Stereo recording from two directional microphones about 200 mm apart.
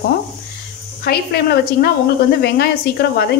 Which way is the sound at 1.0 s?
50° left (ahead or behind).